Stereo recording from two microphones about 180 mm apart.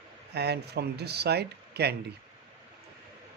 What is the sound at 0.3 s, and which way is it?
Speech, 65° right (ahead or behind).